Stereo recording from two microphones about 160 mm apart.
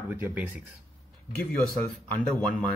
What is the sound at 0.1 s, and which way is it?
Speech, 10° right (ahead or behind).